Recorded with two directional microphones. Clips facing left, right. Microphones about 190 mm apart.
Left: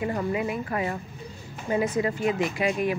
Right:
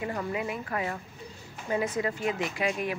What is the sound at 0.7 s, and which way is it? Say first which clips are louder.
Speech: left 4 dB; 20° left (ahead or behind).